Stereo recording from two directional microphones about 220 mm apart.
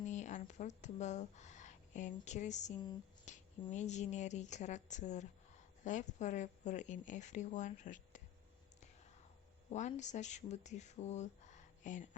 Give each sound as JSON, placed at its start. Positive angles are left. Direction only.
{"t": 0.0, "sound": "speech", "side_deg": 30}
{"t": 3.3, "sound": "a sound", "side_deg": 35}
{"t": 3.7, "sound": "speech", "side_deg": 30}
{"t": 9.6, "sound": "speech", "side_deg": 35}